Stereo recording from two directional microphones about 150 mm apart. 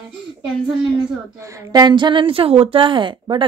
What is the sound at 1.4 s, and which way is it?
A woman's voice, 20° right (ahead or behind).